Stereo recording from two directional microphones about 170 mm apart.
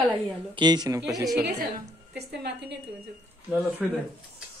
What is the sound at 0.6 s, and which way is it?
Speech, 25° right (ahead or behind).